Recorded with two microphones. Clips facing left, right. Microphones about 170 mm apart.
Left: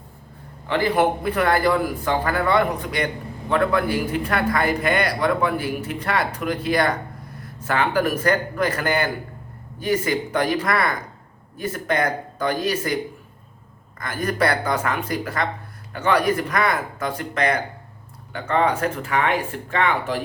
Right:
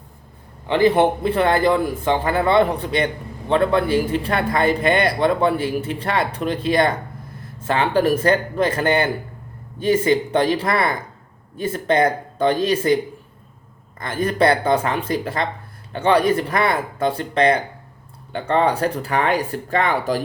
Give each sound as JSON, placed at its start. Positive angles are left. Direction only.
{"t": 0.7, "sound": "speech", "side_deg": -20}
{"t": 14.0, "sound": "speech", "side_deg": -25}